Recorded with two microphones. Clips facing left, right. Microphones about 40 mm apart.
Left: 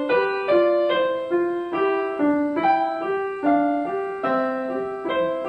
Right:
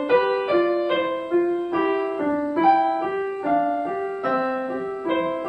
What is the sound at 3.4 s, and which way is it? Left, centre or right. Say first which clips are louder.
Music: left 2 dB; centre.